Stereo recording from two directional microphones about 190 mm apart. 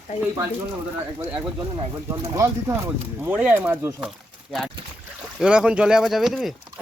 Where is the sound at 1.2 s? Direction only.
5° right (ahead or behind).